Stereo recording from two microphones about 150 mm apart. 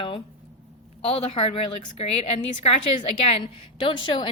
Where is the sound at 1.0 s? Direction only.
40° left (ahead or behind).